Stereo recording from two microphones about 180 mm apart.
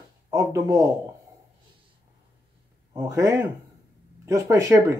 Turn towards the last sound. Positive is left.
turn(degrees=-15)  # may be behind; listen again after turning